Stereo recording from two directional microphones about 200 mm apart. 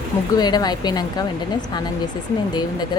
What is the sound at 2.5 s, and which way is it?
Speech, 20° left (ahead or behind).